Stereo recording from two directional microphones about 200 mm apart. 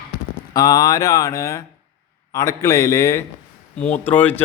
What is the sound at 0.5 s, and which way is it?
Speech, 20° left (ahead or behind).